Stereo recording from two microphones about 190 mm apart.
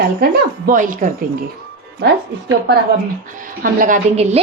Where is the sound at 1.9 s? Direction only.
60° right (ahead or behind).